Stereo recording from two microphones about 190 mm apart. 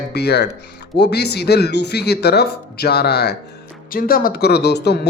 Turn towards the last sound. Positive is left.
turn(degrees=60)  # may be behind; listen again after turning